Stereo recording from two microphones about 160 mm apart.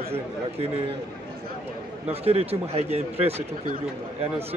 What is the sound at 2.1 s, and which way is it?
Speech, 40° right (ahead or behind).